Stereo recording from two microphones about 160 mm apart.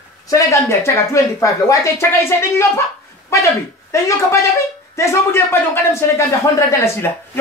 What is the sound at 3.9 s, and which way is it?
Speech, 20° left (ahead or behind).